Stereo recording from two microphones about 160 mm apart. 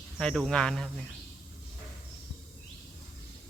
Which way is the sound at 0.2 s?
5° left (ahead or behind).